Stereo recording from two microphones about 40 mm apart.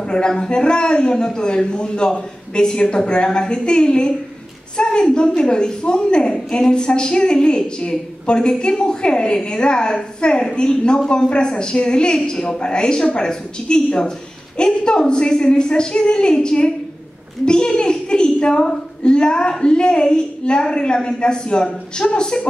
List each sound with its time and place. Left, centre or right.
0.0 s a woman's voice: left